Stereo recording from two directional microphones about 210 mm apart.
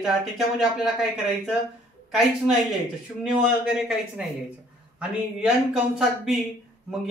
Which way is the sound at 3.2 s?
Centre (ahead or behind).